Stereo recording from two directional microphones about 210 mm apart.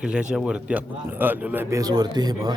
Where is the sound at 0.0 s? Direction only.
5° right (ahead or behind).